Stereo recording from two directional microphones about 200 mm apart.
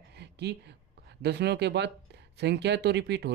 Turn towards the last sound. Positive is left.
turn(degrees=-60)  # may be behind; listen again after turning